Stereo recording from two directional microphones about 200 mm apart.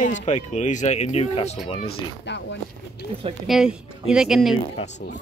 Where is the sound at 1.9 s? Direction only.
60° left (ahead or behind).